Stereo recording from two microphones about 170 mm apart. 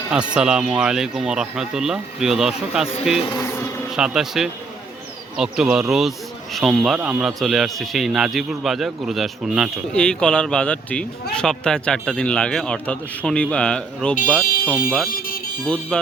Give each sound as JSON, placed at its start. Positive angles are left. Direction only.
{"t": 0.1, "sound": "speech", "side_deg": -5}
{"t": 3.3, "sound": "insect", "side_deg": 15}
{"t": 3.9, "sound": "speech", "side_deg": -5}
{"t": 15.6, "sound": "music", "side_deg": 10}